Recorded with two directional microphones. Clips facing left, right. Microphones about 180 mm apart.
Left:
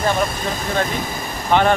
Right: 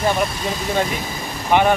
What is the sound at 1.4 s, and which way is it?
Speech, 10° right (ahead or behind).